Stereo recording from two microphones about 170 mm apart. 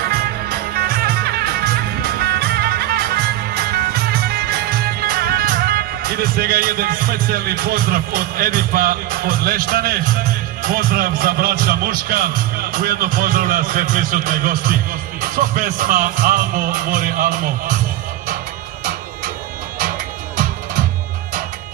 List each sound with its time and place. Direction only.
0.7 s music: 65° right (ahead or behind)
10.6 s speech: 55° right (ahead or behind)